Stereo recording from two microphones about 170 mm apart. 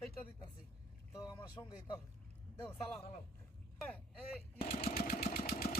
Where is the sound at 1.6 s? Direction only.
20° left (ahead or behind).